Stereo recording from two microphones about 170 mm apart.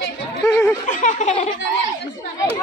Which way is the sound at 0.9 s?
45° left (ahead or behind).